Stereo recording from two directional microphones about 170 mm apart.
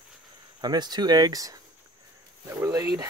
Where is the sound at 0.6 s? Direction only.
25° right (ahead or behind).